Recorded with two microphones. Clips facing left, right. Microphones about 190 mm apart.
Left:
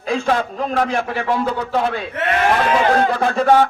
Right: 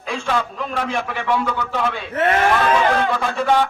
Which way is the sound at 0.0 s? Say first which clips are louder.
Left 4 dB; 40° left (ahead or behind).